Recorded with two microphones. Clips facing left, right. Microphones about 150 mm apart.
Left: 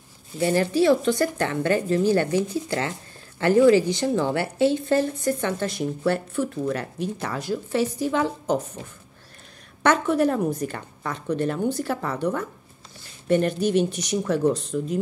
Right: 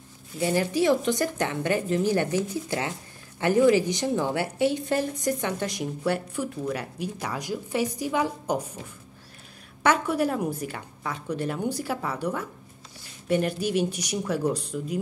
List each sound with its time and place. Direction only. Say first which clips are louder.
0.4 s a woman's voice: left 3 dB; 15° right (ahead or behind)
3.3 s a woman's voice: left 3 dB; 15° right (ahead or behind)
9.8 s a woman's voice: left 3 dB; 10° right (ahead or behind)